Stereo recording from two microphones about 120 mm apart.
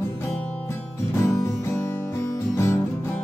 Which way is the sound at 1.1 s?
20° left (ahead or behind).